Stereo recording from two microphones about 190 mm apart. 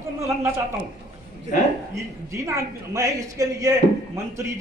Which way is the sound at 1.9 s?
15° right (ahead or behind).